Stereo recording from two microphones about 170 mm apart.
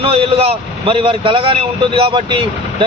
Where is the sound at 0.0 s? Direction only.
35° right (ahead or behind).